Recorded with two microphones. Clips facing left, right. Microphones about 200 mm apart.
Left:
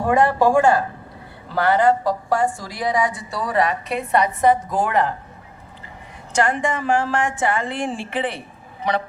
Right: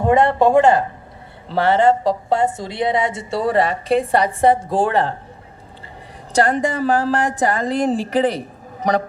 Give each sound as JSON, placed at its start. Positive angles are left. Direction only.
{"t": 0.0, "sound": "a woman's voice", "side_deg": -25}
{"t": 6.3, "sound": "a woman's voice", "side_deg": -35}